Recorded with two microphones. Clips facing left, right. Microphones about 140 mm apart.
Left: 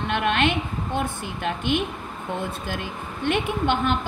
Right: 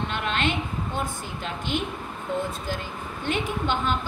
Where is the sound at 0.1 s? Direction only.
60° left (ahead or behind).